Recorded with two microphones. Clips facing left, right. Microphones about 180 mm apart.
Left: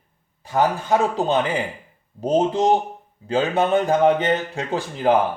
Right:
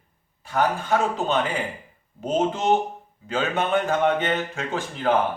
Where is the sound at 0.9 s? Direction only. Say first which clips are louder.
Left 4 dB; 35° left (ahead or behind).